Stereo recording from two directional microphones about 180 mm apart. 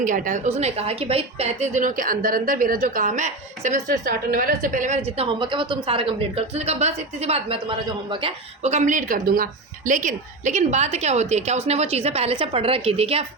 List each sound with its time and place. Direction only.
0.0 s a woman's voice: 45° right (ahead or behind)